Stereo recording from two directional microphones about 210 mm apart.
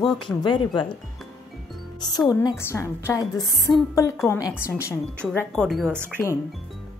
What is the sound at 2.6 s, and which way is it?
Speech, 10° left (ahead or behind).